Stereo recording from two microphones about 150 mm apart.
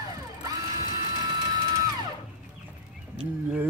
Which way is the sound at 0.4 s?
25° right (ahead or behind).